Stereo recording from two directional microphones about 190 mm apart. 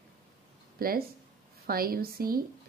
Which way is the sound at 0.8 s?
50° right (ahead or behind).